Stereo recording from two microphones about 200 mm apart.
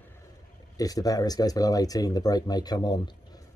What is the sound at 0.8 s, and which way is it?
Speech, 20° left (ahead or behind).